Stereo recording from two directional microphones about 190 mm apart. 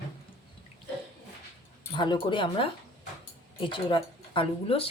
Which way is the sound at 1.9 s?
25° left (ahead or behind).